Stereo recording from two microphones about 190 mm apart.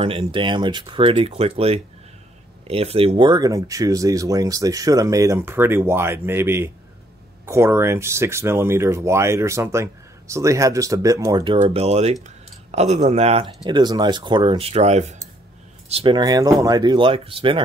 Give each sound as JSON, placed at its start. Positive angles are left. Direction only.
{"t": 0.0, "sound": "speech", "side_deg": -30}
{"t": 11.6, "sound": "speech", "side_deg": -35}